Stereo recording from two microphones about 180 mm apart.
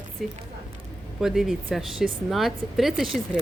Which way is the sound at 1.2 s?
Centre (ahead or behind).